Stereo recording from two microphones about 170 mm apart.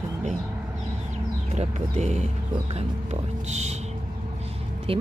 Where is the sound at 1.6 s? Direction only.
40° right (ahead or behind).